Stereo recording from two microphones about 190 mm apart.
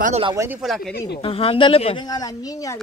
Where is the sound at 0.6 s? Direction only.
Centre (ahead or behind).